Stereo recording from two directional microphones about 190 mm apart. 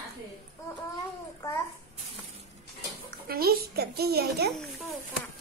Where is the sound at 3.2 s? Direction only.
55° right (ahead or behind).